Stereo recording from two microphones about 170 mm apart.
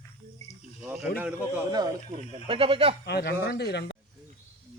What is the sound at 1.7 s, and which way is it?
Speech, 25° right (ahead or behind).